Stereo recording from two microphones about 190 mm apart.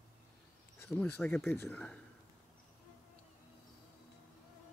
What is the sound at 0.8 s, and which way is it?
Speech, 10° left (ahead or behind).